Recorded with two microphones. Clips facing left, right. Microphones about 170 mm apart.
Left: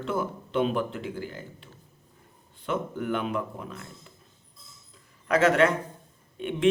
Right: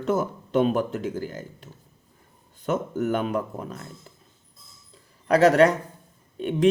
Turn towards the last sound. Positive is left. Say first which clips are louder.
# right 3 dB
turn(degrees=-40)  # may be behind; listen again after turning